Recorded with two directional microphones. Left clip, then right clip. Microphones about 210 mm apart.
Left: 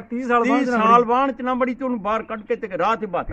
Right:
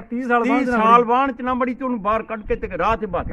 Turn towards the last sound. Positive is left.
turn(degrees=-10)  # may be behind; listen again after turning